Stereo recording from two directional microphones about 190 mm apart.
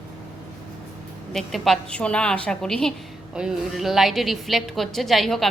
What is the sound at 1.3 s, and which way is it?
A woman's voice, centre (ahead or behind).